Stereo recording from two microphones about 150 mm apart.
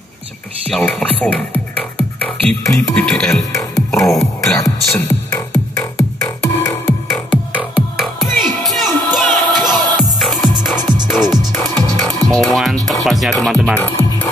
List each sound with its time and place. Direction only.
0.7 s speech: 5° left (ahead or behind)
1.2 s music: 10° left (ahead or behind)
2.9 s speech: 5° left (ahead or behind)
3.5 s music: 20° left (ahead or behind)
7.2 s music: 5° right (ahead or behind)
12.3 s speech: centre (ahead or behind)
13.7 s music: 15° left (ahead or behind)